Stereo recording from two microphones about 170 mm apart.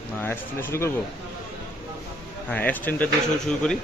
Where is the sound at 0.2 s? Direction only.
10° left (ahead or behind).